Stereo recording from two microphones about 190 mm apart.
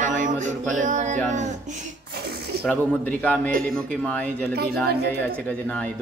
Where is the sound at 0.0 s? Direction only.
40° right (ahead or behind).